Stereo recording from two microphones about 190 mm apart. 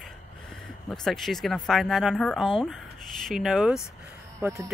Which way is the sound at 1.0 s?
Centre (ahead or behind).